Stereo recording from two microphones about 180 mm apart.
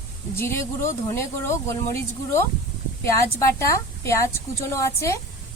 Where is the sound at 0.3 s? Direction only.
15° left (ahead or behind).